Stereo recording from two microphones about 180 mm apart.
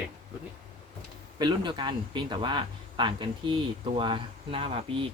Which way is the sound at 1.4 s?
25° right (ahead or behind).